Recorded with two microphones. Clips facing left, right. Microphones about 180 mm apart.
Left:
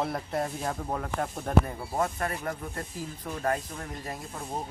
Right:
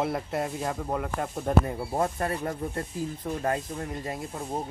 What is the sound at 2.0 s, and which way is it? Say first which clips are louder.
Speech: right 1 dB; 25° right (ahead or behind).